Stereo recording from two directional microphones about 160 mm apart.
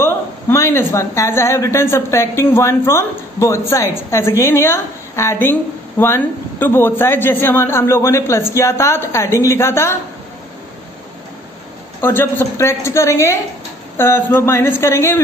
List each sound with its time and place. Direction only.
0.0 s a woman's voice: 15° left (ahead or behind)
12.0 s a woman's voice: 15° left (ahead or behind)